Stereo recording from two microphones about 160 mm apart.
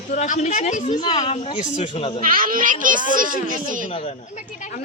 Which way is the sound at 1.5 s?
55° left (ahead or behind).